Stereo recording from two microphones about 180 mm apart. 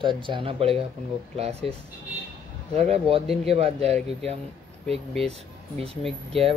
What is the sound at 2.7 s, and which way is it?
Speech, 35° right (ahead or behind).